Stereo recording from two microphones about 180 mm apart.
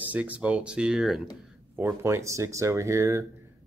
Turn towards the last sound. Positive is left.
turn(degrees=-15)  # may be behind; listen again after turning